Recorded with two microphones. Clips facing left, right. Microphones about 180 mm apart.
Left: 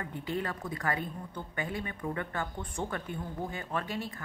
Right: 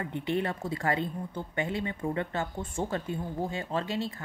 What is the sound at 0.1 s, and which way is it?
A woman's voice, 25° right (ahead or behind).